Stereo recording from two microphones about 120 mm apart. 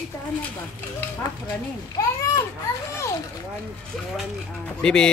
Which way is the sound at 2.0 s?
25° left (ahead or behind).